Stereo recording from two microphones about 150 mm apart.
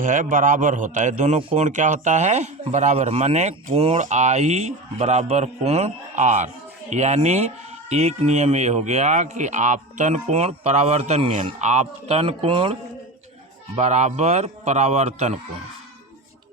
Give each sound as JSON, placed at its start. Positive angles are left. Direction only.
{"t": 0.0, "sound": "a man's voice", "side_deg": -60}
{"t": 1.4, "sound": "speech", "side_deg": -40}
{"t": 13.7, "sound": "speech", "side_deg": -50}